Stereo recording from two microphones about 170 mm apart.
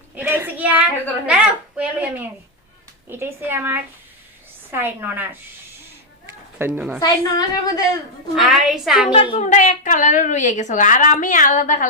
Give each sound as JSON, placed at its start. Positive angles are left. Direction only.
{"t": 0.2, "sound": "child singing", "side_deg": -10}
{"t": 1.3, "sound": "a woman's voice", "side_deg": -5}
{"t": 6.6, "sound": "a woman's voice", "side_deg": -10}
{"t": 7.0, "sound": "a woman's voice", "side_deg": 20}
{"t": 8.4, "sound": "a woman's voice", "side_deg": -5}
{"t": 9.3, "sound": "a woman's voice", "side_deg": 45}